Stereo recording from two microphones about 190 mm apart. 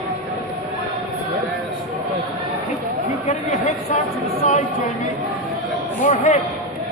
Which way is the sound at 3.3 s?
35° left (ahead or behind).